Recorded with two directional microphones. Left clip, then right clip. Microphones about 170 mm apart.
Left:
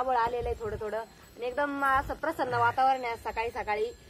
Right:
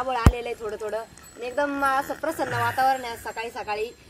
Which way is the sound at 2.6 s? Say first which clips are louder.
Right 3 dB; 45° right (ahead or behind).